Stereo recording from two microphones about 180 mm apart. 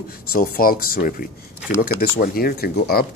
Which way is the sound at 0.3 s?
55° left (ahead or behind).